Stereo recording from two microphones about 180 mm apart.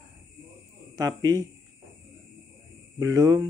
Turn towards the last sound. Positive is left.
turn(degrees=-15)  # may be behind; listen again after turning